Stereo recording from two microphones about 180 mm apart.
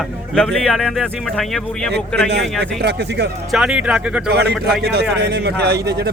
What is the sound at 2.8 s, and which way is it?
Speech, 65° right (ahead or behind).